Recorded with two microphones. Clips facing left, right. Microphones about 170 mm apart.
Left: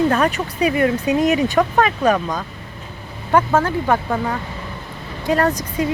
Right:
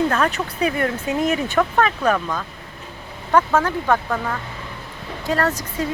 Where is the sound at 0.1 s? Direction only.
15° left (ahead or behind).